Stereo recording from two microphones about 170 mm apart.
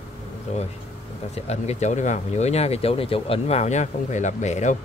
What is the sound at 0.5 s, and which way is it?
Speech, 40° left (ahead or behind).